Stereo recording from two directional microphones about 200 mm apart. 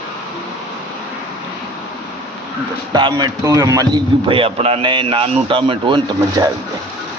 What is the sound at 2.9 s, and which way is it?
A man's voice, 20° right (ahead or behind).